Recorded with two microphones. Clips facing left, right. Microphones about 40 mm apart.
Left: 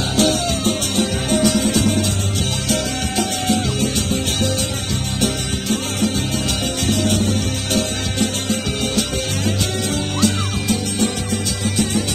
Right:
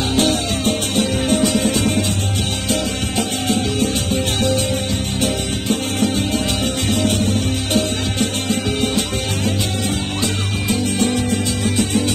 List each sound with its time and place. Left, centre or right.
0.1 s music: right